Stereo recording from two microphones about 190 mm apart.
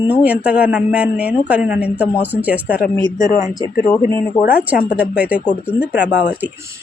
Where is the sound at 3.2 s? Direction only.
45° left (ahead or behind).